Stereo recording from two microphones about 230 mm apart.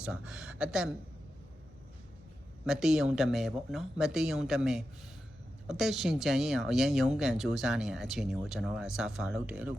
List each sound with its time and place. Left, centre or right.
0.0 s speech: centre
2.6 s speech: centre